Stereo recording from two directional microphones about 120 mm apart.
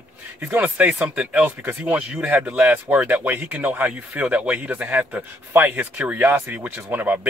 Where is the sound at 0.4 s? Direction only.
15° right (ahead or behind).